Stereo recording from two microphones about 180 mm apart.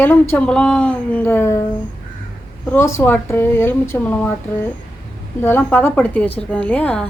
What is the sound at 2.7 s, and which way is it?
A woman's voice, 15° left (ahead or behind).